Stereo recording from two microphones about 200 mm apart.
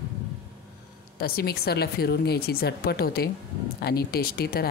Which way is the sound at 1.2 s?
50° left (ahead or behind).